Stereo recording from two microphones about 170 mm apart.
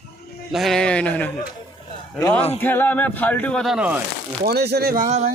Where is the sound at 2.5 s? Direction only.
10° left (ahead or behind); by 4.0 s 5° right (ahead or behind).